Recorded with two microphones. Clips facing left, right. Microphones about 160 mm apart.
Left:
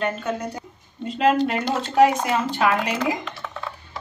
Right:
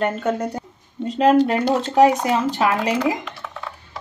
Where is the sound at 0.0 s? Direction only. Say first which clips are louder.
Right 4 dB; 40° right (ahead or behind).